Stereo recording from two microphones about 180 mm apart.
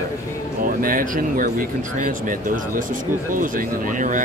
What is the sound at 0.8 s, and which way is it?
Speech, 50° right (ahead or behind).